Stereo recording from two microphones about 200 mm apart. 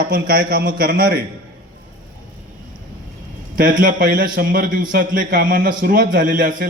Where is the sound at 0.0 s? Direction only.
45° right (ahead or behind).